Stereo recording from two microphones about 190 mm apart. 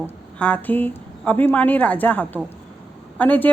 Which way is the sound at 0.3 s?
5° left (ahead or behind).